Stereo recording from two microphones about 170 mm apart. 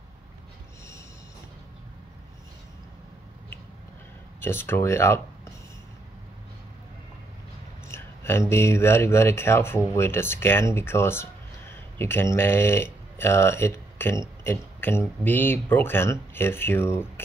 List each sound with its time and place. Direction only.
4.4 s speech: 15° left (ahead or behind)
7.9 s speech: 15° left (ahead or behind)